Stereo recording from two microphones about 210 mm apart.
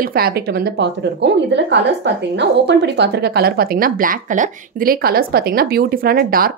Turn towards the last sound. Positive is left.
turn(degrees=-45)  # may be behind; listen again after turning